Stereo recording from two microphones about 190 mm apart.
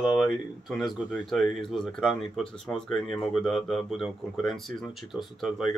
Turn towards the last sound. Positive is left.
turn(degrees=0)  # may be behind; listen again after turning